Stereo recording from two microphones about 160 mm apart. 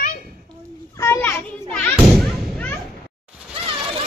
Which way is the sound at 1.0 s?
15° left (ahead or behind).